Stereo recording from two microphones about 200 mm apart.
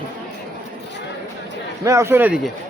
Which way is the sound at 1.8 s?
15° right (ahead or behind).